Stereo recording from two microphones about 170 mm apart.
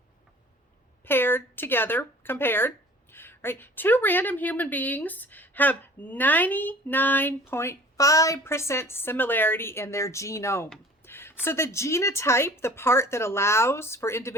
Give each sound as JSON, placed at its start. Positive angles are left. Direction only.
{"t": 1.0, "sound": "speech", "side_deg": 10}
{"t": 11.0, "sound": "a sound", "side_deg": 15}
{"t": 11.4, "sound": "speech", "side_deg": 15}